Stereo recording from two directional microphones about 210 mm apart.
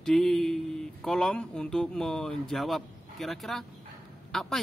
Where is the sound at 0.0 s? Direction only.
Centre (ahead or behind).